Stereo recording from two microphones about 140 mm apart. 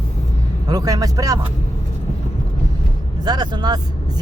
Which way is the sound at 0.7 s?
25° right (ahead or behind).